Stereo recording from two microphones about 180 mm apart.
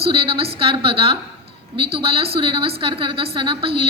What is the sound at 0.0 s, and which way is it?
A woman's voice, 30° right (ahead or behind).